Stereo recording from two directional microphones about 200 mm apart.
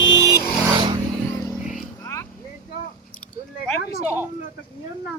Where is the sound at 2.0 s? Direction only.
10° left (ahead or behind).